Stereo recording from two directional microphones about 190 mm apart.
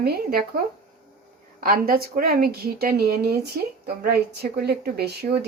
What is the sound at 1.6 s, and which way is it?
A woman's voice, 50° right (ahead or behind).